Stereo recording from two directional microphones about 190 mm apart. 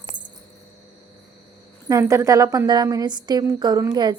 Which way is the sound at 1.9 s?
15° right (ahead or behind).